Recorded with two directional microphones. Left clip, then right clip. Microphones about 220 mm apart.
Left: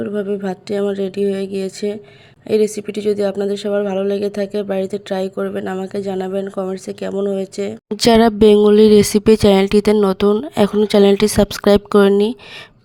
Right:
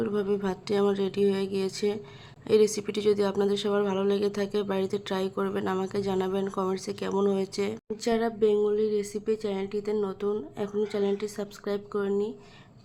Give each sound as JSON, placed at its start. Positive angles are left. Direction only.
{"t": 0.0, "sound": "speech", "side_deg": 15}
{"t": 7.9, "sound": "speech", "side_deg": 45}